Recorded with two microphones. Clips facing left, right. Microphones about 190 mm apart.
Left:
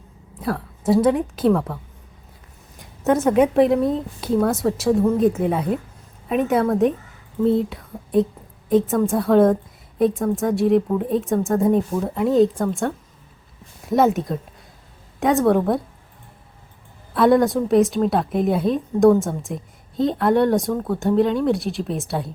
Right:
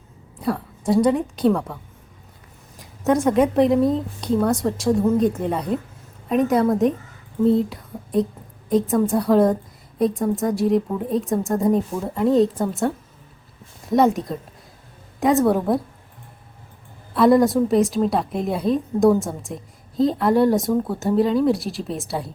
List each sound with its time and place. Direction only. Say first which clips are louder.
0.3 s a woman's voice: right 1 dB; centre (ahead or behind)
17.2 s a woman's voice: right 1 dB; centre (ahead or behind)